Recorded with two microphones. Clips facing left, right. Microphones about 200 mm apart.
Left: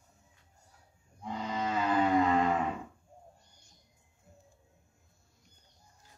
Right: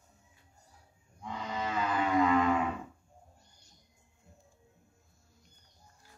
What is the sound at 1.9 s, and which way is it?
Music, 35° left (ahead or behind).